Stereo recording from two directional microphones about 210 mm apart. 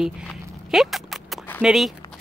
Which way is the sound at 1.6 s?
Centre (ahead or behind).